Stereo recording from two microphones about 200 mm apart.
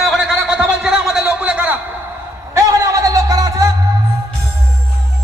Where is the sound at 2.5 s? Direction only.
15° right (ahead or behind).